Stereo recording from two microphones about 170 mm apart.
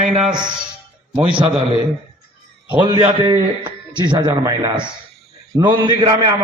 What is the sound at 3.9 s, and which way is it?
A man's voice, 25° right (ahead or behind).